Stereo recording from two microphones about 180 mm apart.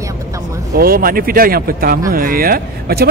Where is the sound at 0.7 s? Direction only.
55° right (ahead or behind).